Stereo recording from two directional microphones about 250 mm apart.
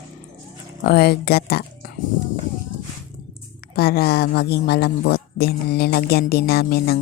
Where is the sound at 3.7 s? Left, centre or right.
Left.